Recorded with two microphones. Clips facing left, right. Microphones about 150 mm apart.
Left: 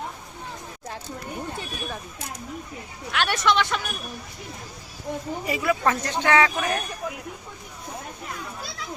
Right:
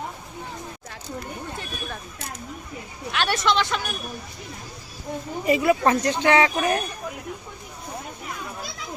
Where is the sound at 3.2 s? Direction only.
Centre (ahead or behind).